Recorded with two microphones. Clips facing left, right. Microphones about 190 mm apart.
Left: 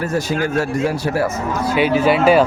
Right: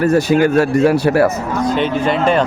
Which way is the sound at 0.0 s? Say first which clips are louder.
Right 8 dB; 65° right (ahead or behind).